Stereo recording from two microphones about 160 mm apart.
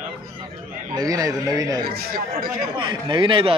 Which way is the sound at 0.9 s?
25° right (ahead or behind).